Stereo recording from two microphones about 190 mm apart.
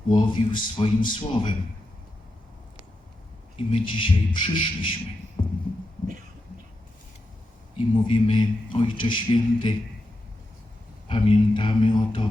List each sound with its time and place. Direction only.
0.1 s a man's voice: 25° left (ahead or behind)
3.7 s a man's voice: 25° left (ahead or behind)
5.4 s music: 25° left (ahead or behind)
7.8 s a man's voice: 25° left (ahead or behind)
11.1 s a man's voice: 25° left (ahead or behind)